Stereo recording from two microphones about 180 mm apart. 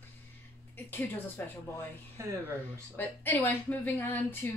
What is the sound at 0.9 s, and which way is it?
Speech, 10° left (ahead or behind).